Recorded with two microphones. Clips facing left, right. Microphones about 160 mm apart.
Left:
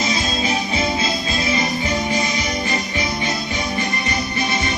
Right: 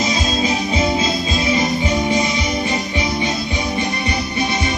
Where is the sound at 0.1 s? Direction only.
25° right (ahead or behind).